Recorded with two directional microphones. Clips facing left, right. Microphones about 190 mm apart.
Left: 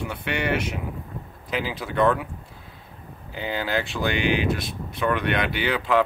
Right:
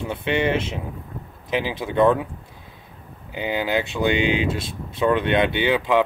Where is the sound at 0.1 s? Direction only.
25° right (ahead or behind).